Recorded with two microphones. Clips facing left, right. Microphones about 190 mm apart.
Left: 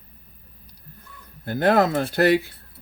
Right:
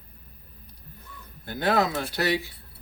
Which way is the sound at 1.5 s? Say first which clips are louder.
Left 5 dB; 50° left (ahead or behind).